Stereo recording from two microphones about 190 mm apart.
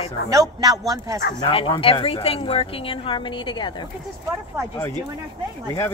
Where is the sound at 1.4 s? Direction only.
25° left (ahead or behind).